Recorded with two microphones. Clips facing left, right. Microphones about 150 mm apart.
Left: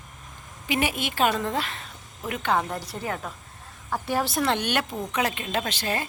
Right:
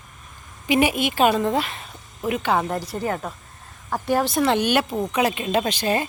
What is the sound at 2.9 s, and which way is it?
Speech, 50° right (ahead or behind).